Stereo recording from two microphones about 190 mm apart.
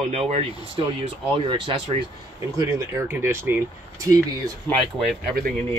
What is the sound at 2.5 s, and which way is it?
Speech, 15° right (ahead or behind).